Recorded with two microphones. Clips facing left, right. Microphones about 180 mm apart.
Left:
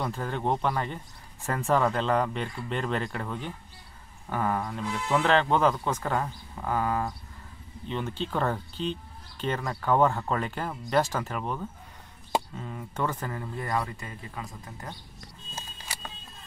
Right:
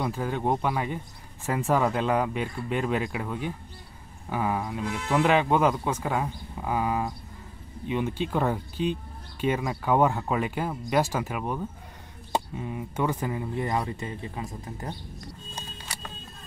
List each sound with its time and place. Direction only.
0.0 s speech: 10° right (ahead or behind); by 15.0 s 25° right (ahead or behind)